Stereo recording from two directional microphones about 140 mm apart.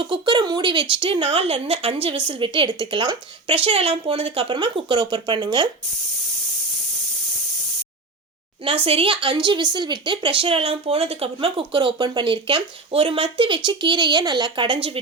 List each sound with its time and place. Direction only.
0.0 s speech: 35° right (ahead or behind)
8.6 s speech: 40° right (ahead or behind)